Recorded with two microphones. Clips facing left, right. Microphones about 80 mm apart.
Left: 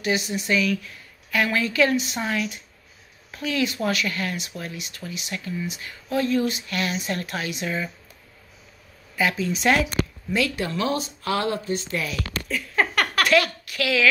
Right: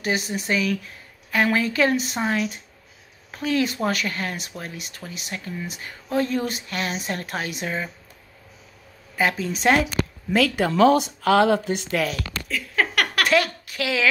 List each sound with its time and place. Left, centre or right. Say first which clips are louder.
0.0 s speech: even; right
6.7 s speech: left 1 dB; right
9.1 s speech: right 1 dB; right
10.3 s speech: right 4 dB; right
12.4 s a sound: even; centre
13.3 s speech: even; right